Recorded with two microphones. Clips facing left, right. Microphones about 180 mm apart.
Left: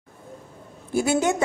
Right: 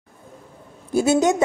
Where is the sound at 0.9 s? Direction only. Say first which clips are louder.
Right 4 dB; 20° right (ahead or behind).